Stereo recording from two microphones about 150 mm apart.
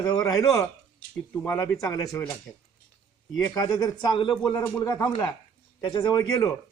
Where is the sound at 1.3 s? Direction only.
10° left (ahead or behind).